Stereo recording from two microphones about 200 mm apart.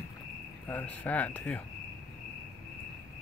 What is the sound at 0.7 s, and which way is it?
Speech, 10° left (ahead or behind).